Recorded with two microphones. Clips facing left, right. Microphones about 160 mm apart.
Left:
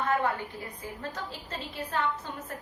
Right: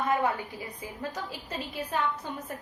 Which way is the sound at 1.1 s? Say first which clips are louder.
Right 2 dB; 15° right (ahead or behind).